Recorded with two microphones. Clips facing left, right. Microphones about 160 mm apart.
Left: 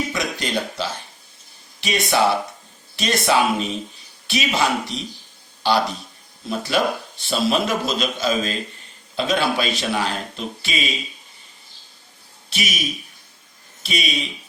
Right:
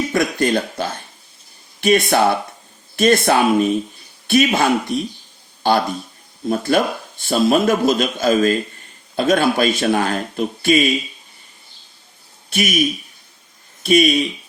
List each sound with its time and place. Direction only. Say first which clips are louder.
0.1 s a man's voice: right 7 dB; 55° right (ahead or behind)
12.5 s a man's voice: right 7 dB; 50° right (ahead or behind)
13.8 s a man's voice: right 12 dB; 50° right (ahead or behind)